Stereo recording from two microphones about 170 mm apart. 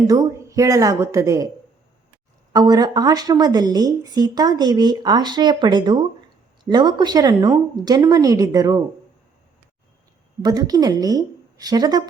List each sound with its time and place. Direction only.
0.1 s speech: 20° right (ahead or behind)
2.5 s speech: 20° right (ahead or behind)
10.4 s speech: 20° right (ahead or behind)